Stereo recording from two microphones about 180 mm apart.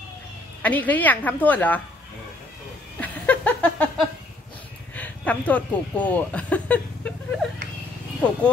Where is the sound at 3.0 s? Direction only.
10° left (ahead or behind).